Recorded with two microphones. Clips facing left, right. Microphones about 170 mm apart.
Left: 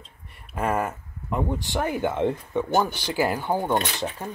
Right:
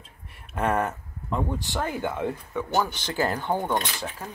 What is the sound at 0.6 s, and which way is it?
Speech, centre (ahead or behind).